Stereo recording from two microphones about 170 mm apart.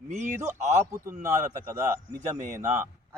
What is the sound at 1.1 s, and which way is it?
Speech, 45° right (ahead or behind).